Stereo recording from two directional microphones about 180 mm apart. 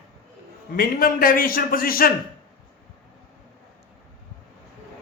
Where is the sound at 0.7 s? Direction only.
55° left (ahead or behind).